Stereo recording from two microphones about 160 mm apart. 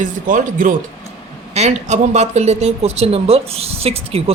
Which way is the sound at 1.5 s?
45° right (ahead or behind).